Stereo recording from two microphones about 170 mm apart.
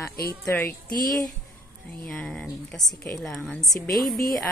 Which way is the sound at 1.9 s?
5° left (ahead or behind).